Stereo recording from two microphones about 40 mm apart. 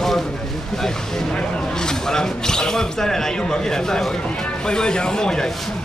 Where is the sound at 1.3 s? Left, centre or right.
Centre.